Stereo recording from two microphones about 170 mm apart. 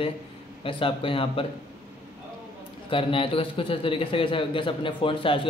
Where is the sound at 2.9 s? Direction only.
30° left (ahead or behind).